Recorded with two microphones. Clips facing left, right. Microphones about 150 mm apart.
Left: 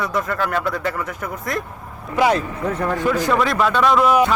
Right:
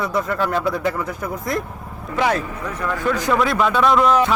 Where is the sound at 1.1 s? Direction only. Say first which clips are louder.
Right 2 dB; 35° right (ahead or behind).